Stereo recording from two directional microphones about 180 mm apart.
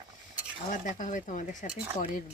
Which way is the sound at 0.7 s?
45° left (ahead or behind).